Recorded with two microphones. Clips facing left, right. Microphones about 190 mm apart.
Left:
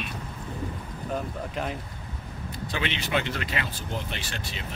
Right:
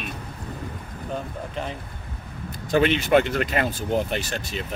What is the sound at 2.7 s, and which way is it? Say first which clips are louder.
Speech: right 12 dB; 45° right (ahead or behind).